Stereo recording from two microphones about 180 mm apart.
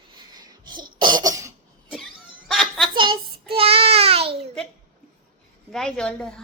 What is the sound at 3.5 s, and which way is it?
Child singing, 30° right (ahead or behind).